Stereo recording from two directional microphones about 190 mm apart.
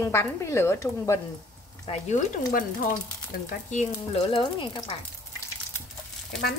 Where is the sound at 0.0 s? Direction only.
15° left (ahead or behind).